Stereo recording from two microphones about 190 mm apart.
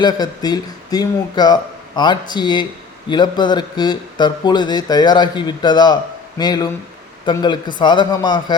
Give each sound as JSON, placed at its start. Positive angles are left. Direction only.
{"t": 0.0, "sound": "speech", "side_deg": 20}